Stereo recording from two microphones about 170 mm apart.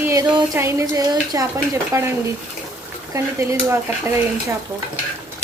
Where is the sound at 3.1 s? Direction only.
15° right (ahead or behind).